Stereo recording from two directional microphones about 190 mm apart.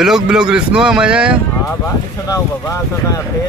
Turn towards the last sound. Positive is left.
turn(degrees=15)  # may be behind; listen again after turning